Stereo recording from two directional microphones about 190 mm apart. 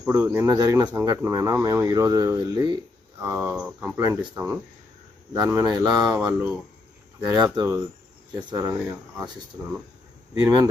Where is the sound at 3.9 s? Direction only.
15° right (ahead or behind).